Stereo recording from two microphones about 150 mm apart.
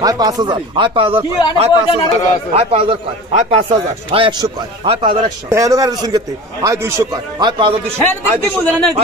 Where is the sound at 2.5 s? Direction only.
40° right (ahead or behind).